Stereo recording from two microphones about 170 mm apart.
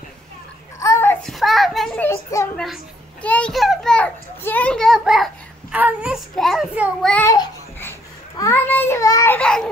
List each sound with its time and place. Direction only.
0.7 s babbling: 15° left (ahead or behind)
1.2 s children playing: centre (ahead or behind)
2.0 s a child's voice: 15° left (ahead or behind)
2.6 s a child's voice: 5° left (ahead or behind)
7.2 s babbling: 15° left (ahead or behind)
8.4 s a child's voice: 15° left (ahead or behind)